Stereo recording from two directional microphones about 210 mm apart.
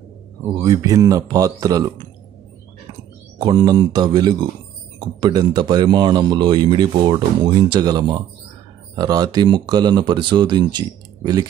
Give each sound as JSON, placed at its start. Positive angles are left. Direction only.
{"t": 0.6, "sound": "speech", "side_deg": -15}
{"t": 2.9, "sound": "speech", "side_deg": -20}